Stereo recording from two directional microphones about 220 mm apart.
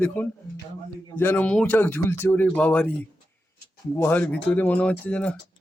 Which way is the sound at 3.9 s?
10° left (ahead or behind).